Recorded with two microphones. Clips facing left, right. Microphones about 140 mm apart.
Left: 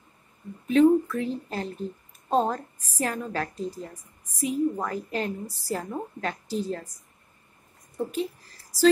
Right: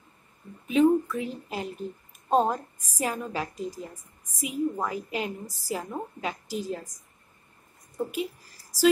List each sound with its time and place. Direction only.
0.7 s a woman's voice: 10° right (ahead or behind)
8.0 s a woman's voice: 10° right (ahead or behind)